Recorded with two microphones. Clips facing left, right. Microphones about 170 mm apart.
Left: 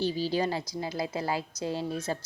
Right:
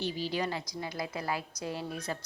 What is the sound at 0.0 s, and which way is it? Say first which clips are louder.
A woman's voice: left 5 dB; 35° left (ahead or behind).